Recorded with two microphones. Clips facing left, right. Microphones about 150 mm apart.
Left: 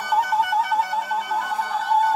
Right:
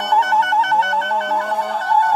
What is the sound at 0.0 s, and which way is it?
Clarinet, 75° right (ahead or behind).